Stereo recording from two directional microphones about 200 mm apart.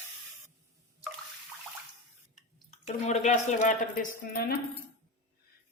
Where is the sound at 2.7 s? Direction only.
35° left (ahead or behind).